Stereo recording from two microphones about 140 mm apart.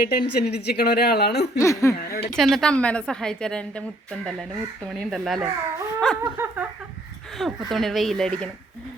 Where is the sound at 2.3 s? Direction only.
5° left (ahead or behind).